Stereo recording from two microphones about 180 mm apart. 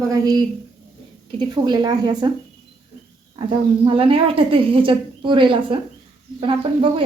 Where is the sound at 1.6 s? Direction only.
25° right (ahead or behind).